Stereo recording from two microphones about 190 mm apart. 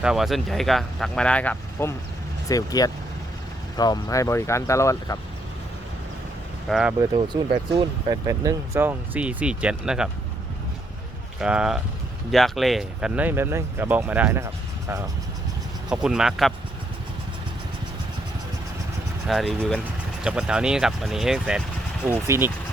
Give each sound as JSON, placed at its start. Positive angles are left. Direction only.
{"t": 0.0, "sound": "speech", "side_deg": 0}
{"t": 6.7, "sound": "speech", "side_deg": -5}
{"t": 7.2, "sound": "speech", "side_deg": -25}
{"t": 8.3, "sound": "speech", "side_deg": -15}
{"t": 11.3, "sound": "speech", "side_deg": -5}
{"t": 15.9, "sound": "speech", "side_deg": -5}
{"t": 19.3, "sound": "speech", "side_deg": 0}